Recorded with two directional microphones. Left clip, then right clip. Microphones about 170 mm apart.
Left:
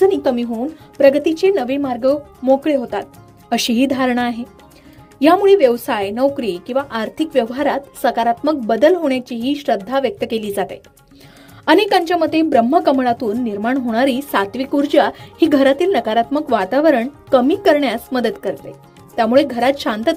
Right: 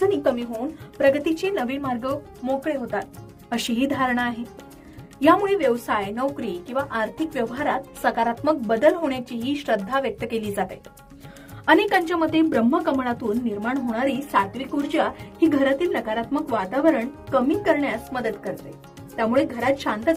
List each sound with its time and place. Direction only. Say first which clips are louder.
0.0 s music: left 6 dB; 35° left (ahead or behind)
0.9 s a woman's voice: left 7 dB; 35° left (ahead or behind)
2.4 s speech: left 12 dB; 25° left (ahead or behind)
3.5 s a woman's voice: left 8 dB; 35° left (ahead or behind)